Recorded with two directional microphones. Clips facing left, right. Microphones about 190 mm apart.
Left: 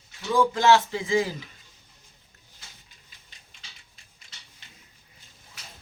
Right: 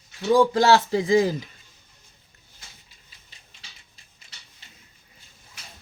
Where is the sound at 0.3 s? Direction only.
35° right (ahead or behind).